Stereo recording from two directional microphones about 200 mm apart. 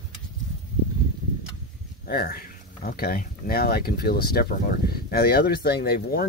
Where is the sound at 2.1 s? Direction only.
50° left (ahead or behind).